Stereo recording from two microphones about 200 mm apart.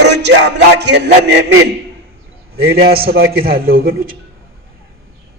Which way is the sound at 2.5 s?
50° right (ahead or behind).